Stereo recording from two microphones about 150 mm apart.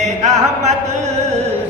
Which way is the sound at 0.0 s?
50° right (ahead or behind).